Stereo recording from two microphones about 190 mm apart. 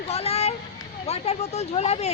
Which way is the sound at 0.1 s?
35° left (ahead or behind).